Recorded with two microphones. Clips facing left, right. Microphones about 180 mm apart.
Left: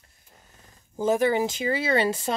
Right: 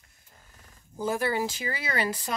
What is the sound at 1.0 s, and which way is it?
Speech, 20° left (ahead or behind).